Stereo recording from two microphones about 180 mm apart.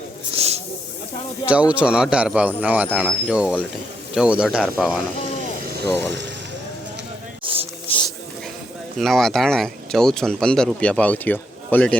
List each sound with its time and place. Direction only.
0.3 s snake: 35° right (ahead or behind)
1.5 s speech: 5° right (ahead or behind)
6.0 s speech: 75° right (ahead or behind)
7.4 s a sound: 30° right (ahead or behind)
9.0 s speech: centre (ahead or behind)